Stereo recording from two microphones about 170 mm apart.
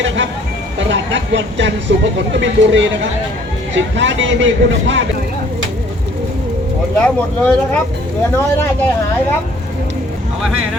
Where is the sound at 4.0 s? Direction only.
90° right.